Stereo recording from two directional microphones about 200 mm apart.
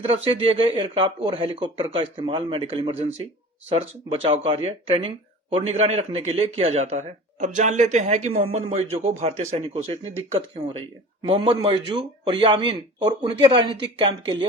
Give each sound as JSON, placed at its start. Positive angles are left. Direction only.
{"t": 0.0, "sound": "speech", "side_deg": -25}